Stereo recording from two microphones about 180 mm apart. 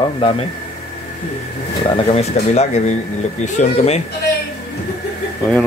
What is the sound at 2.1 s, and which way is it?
Speech, 40° left (ahead or behind).